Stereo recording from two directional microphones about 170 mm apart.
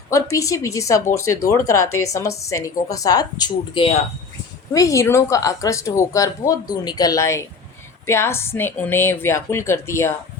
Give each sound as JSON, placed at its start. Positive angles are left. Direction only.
{"t": 0.1, "sound": "speech", "side_deg": 20}
{"t": 4.7, "sound": "a woman's voice", "side_deg": 20}